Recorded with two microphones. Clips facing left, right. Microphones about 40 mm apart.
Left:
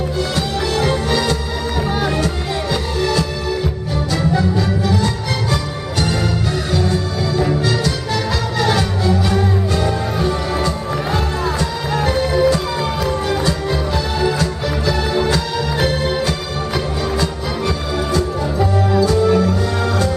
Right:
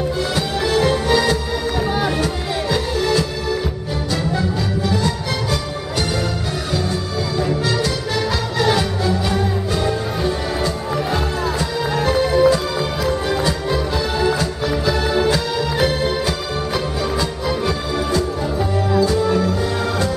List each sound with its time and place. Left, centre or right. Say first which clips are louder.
0.4 s music: right 2 dB; centre
7.3 s music: left 2 dB; centre